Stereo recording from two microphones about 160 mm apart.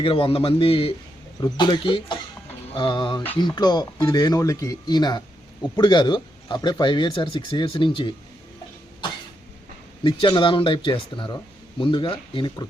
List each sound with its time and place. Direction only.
0.0 s speech: 35° left (ahead or behind)
10.0 s speech: 30° left (ahead or behind)